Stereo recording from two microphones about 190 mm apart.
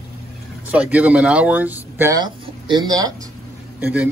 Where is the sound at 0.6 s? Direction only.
5° right (ahead or behind).